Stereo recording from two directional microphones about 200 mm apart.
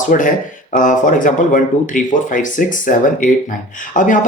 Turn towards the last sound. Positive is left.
turn(degrees=40)  # may be behind; listen again after turning